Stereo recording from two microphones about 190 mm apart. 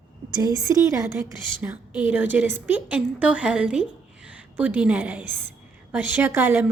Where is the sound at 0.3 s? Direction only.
20° right (ahead or behind).